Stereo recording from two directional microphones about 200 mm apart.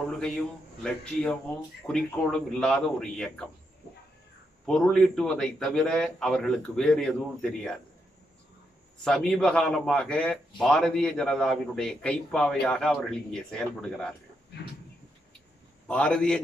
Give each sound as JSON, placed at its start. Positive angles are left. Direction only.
{"t": 0.8, "sound": "a man's voice", "side_deg": 5}
{"t": 4.6, "sound": "a man's voice", "side_deg": 5}
{"t": 9.0, "sound": "a man's voice", "side_deg": 0}
{"t": 15.9, "sound": "a man's voice", "side_deg": 5}